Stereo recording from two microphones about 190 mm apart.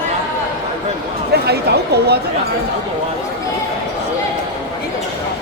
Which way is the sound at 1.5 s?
60° right (ahead or behind).